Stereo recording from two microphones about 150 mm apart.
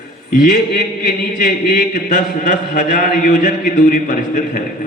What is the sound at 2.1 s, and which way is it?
A man's voice, 55° left (ahead or behind).